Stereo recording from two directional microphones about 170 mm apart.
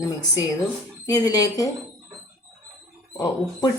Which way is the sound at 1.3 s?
20° left (ahead or behind).